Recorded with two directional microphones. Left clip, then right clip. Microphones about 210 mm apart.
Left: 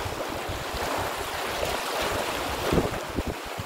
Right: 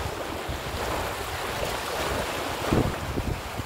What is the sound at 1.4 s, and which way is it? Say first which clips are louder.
Stream: left 2 dB; 25° left (ahead or behind).